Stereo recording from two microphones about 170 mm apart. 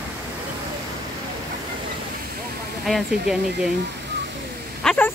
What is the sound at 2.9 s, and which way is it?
Speech, centre (ahead or behind).